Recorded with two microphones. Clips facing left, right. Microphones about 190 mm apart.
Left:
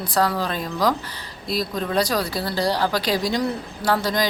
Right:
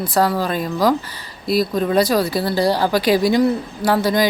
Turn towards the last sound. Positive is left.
turn(degrees=-10)  # may be behind; listen again after turning